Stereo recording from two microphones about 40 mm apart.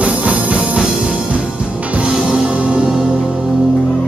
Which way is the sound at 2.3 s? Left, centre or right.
Right.